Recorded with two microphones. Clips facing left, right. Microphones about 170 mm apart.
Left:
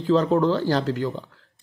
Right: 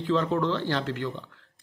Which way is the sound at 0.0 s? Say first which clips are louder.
Left 6 dB; 40° left (ahead or behind).